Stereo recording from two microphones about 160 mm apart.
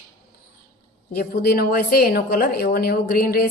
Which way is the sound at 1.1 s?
70° left (ahead or behind).